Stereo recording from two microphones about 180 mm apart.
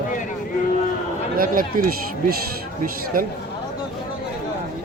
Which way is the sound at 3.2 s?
50° right (ahead or behind).